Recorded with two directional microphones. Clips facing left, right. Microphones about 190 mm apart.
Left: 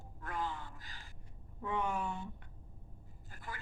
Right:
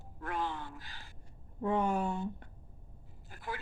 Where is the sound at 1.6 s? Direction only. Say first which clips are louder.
Right 6 dB; 40° right (ahead or behind).